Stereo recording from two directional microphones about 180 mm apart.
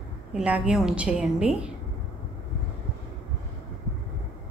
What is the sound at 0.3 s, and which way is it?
A woman's voice, 5° right (ahead or behind).